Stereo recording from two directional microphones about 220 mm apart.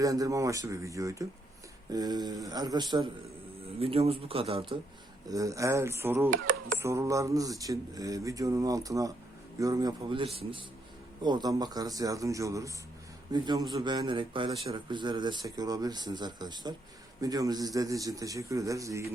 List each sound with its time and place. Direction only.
0.0 s a man's voice: 15° right (ahead or behind)